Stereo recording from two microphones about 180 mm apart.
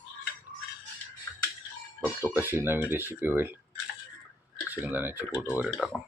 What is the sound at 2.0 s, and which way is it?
Speech, 10° right (ahead or behind).